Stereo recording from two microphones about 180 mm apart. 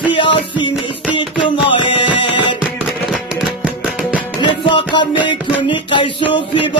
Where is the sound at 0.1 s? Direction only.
25° left (ahead or behind).